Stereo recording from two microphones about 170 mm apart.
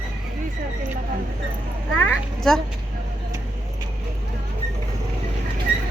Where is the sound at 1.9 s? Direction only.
5° left (ahead or behind).